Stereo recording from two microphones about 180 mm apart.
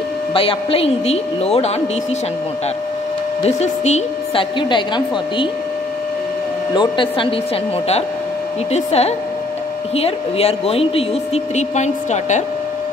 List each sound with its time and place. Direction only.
0.3 s speech: 30° left (ahead or behind)
3.4 s speech: 40° left (ahead or behind)
4.6 s speech: 25° left (ahead or behind)
6.7 s speech: 25° left (ahead or behind)
8.7 s speech: 35° left (ahead or behind)